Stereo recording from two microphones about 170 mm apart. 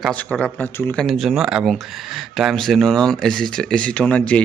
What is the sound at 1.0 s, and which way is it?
Speech, centre (ahead or behind).